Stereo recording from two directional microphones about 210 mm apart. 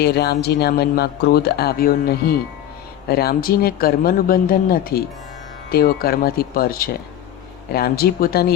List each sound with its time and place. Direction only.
0.0 s speech: 50° left (ahead or behind)